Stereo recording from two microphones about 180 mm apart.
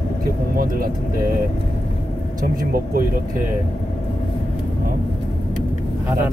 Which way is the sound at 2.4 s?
50° right (ahead or behind).